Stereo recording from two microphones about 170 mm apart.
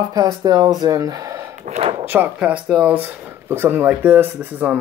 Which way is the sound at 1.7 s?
40° right (ahead or behind).